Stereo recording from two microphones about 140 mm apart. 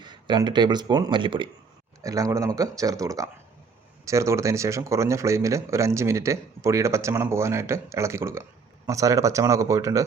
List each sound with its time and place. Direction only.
0.0 s speech: 35° right (ahead or behind)
2.0 s speech: 25° right (ahead or behind)